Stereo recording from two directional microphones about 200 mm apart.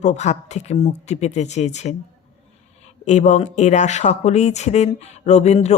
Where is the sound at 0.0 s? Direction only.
35° left (ahead or behind).